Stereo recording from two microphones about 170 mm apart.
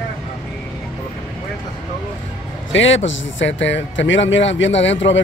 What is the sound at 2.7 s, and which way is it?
Speech, 90° left.